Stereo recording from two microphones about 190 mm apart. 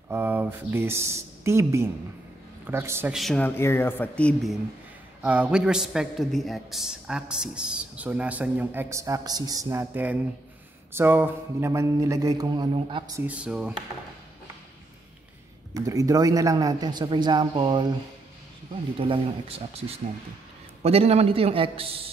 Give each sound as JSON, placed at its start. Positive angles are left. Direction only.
{"t": 0.1, "sound": "a man's voice", "side_deg": -10}
{"t": 3.2, "sound": "a man's voice", "side_deg": 5}
{"t": 13.2, "sound": "speech", "side_deg": -5}
{"t": 15.7, "sound": "a man's voice", "side_deg": -20}
{"t": 18.9, "sound": "a man's voice", "side_deg": -30}